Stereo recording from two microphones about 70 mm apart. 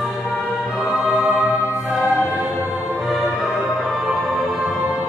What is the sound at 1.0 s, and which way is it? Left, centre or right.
Music, right.